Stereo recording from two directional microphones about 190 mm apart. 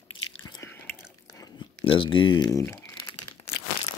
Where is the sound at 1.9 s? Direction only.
25° left (ahead or behind).